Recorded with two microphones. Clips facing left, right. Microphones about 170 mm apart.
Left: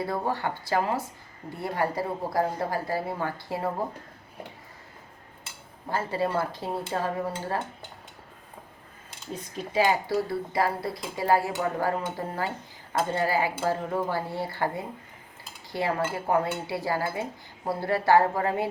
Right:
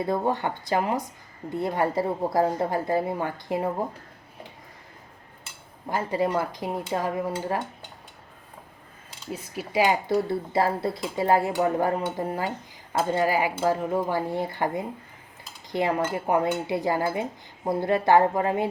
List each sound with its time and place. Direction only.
0.0 s speech: 20° right (ahead or behind)
5.9 s speech: 15° right (ahead or behind)
9.3 s speech: 10° right (ahead or behind)